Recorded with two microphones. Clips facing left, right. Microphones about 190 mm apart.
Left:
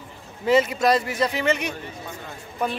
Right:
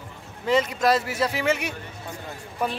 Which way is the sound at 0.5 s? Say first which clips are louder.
Left 2 dB; 5° left (ahead or behind).